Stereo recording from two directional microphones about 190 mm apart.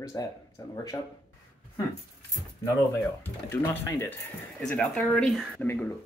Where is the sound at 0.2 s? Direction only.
15° left (ahead or behind).